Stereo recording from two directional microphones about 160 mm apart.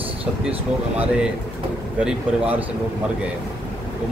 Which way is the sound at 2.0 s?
10° right (ahead or behind).